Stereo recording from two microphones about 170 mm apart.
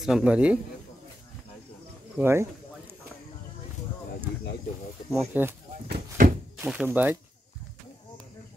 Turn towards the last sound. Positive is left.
turn(degrees=-10)  # may be behind; listen again after turning